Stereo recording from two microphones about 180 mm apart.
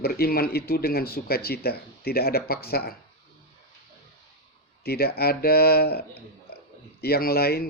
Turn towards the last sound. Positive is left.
turn(degrees=60)  # may be behind; listen again after turning